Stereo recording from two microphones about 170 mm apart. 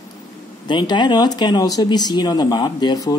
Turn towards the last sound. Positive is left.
turn(degrees=25)  # may be behind; listen again after turning